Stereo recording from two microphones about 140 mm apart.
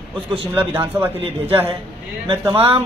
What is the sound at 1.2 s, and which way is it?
Speech, 40° right (ahead or behind).